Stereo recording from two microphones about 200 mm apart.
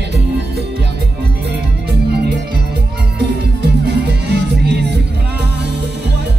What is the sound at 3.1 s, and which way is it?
Music, 55° right (ahead or behind).